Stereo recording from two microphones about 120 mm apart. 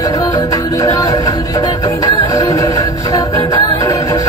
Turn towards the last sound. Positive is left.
turn(degrees=25)  # may be behind; listen again after turning